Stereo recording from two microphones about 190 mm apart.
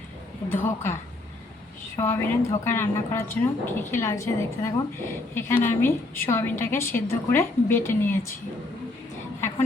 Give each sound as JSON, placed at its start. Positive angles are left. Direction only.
{"t": 0.4, "sound": "a woman's voice", "side_deg": 10}
{"t": 2.0, "sound": "a woman's voice", "side_deg": 15}